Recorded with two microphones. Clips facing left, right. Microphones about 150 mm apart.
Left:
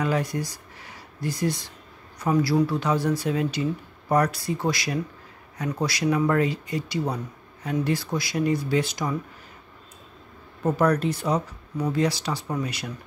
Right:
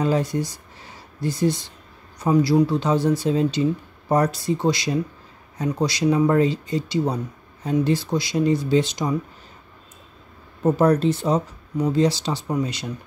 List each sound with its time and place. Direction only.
0.0 s speech: 25° right (ahead or behind)
10.6 s speech: 25° right (ahead or behind)